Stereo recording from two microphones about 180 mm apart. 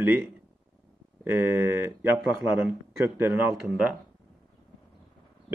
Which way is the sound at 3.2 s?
10° right (ahead or behind).